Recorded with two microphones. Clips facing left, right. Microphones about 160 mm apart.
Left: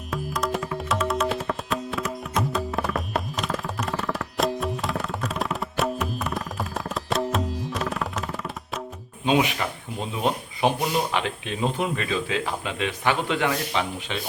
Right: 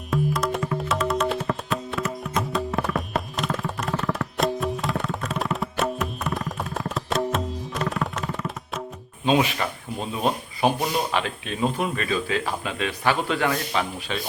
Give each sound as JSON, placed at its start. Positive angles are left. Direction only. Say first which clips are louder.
{"t": 0.1, "sound": "music", "louder": "right 3 dB", "side_deg": 0}
{"t": 9.2, "sound": "speech", "louder": "right 1 dB", "side_deg": 15}